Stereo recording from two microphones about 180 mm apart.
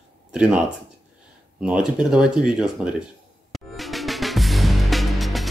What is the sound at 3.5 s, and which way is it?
Music, centre (ahead or behind).